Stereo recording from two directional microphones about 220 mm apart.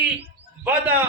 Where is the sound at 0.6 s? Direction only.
10° right (ahead or behind).